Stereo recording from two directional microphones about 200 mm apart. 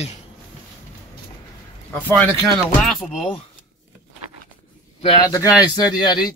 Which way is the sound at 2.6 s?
Centre (ahead or behind).